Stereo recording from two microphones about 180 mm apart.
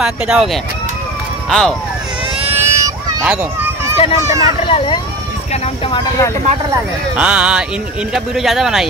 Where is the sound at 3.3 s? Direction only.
15° right (ahead or behind).